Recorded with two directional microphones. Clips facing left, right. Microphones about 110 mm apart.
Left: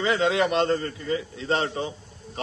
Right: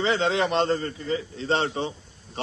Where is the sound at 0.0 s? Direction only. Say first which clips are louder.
Left 1 dB; 30° right (ahead or behind).